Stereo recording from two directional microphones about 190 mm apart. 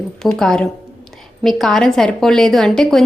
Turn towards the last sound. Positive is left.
turn(degrees=0)  # may be behind; listen again after turning